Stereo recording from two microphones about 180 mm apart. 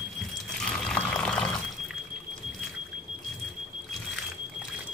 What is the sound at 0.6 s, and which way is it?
Music, 5° left (ahead or behind).